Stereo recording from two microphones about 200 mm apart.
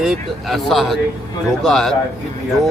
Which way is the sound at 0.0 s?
Centre (ahead or behind).